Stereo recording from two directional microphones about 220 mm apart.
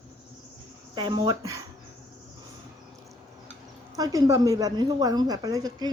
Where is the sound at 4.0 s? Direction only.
15° right (ahead or behind).